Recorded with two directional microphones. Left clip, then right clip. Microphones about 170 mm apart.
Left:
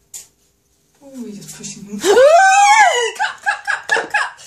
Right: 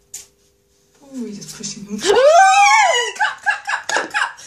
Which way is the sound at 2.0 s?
35° left (ahead or behind).